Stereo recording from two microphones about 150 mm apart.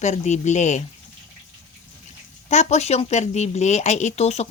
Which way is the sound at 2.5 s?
50° left (ahead or behind).